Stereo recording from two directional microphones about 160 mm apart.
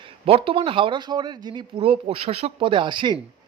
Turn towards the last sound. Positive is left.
turn(degrees=-30)  # may be behind; listen again after turning